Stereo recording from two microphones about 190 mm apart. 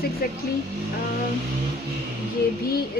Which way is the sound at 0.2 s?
50° left (ahead or behind).